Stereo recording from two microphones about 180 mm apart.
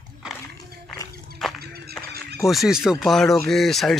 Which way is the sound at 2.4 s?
Centre (ahead or behind).